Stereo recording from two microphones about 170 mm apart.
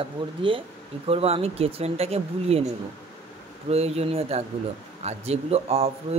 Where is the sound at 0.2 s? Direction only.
30° right (ahead or behind).